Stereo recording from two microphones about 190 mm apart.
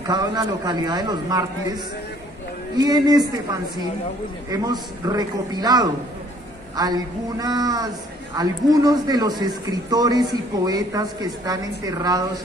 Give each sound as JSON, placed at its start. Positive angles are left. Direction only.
{"t": 0.0, "sound": "speech", "side_deg": -20}
{"t": 2.8, "sound": "speech", "side_deg": -20}
{"t": 4.5, "sound": "speech", "side_deg": -20}